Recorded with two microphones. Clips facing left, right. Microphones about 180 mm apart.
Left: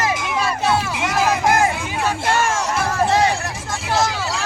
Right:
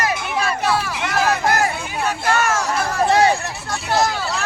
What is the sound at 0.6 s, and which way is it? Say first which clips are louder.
Music: left 2 dB; 25° left (ahead or behind).